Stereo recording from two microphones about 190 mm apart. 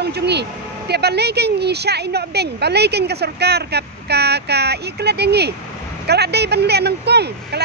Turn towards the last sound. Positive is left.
turn(degrees=-60)  # may be behind; listen again after turning